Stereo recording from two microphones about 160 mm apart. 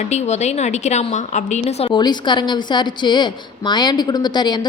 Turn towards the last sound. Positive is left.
turn(degrees=25)  # may be behind; listen again after turning